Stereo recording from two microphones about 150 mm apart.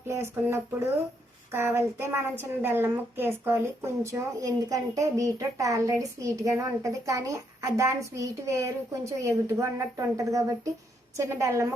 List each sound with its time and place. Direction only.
0.1 s speech: 15° right (ahead or behind)